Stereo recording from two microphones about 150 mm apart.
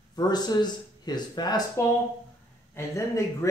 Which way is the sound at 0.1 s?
25° left (ahead or behind).